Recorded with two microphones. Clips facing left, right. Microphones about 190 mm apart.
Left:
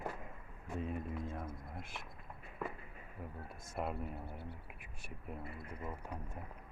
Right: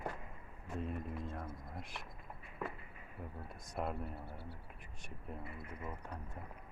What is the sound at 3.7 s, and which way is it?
Speech, 5° left (ahead or behind).